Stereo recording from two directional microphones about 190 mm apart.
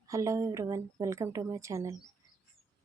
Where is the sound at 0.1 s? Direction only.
15° right (ahead or behind).